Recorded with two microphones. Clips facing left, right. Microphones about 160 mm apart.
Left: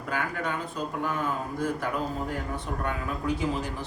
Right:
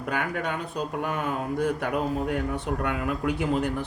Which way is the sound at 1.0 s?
60° right (ahead or behind).